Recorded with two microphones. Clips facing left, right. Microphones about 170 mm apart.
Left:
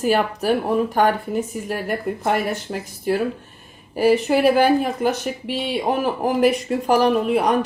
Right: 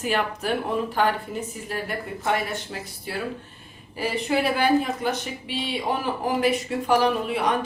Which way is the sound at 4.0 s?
45° left (ahead or behind).